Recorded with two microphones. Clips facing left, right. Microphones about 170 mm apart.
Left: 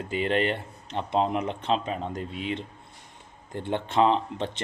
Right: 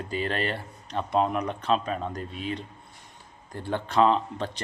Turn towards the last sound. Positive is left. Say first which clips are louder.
# left 1 dB
turn(degrees=20)  # may be behind; listen again after turning